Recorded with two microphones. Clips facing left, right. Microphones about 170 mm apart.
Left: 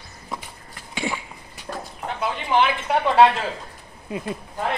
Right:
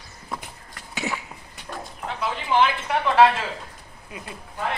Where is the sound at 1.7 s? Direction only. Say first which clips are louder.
Left 3 dB; 35° left (ahead or behind).